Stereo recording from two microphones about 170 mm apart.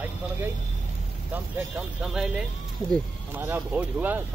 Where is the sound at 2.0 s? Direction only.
5° right (ahead or behind).